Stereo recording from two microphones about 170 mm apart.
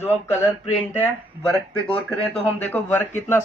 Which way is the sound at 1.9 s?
10° left (ahead or behind).